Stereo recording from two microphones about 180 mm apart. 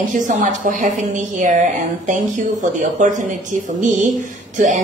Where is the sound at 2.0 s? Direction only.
45° right (ahead or behind).